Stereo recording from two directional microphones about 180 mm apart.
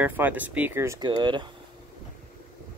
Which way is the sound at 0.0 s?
10° right (ahead or behind).